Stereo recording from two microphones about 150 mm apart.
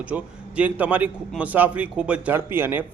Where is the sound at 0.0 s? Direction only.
10° right (ahead or behind).